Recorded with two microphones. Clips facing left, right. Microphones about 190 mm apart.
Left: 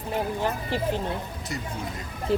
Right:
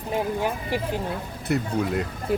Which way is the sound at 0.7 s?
10° right (ahead or behind).